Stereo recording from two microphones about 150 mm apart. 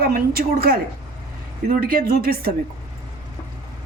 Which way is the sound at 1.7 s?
70° right (ahead or behind).